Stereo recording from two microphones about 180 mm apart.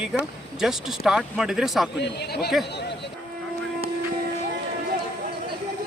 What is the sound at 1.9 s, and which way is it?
Speech, 70° left (ahead or behind).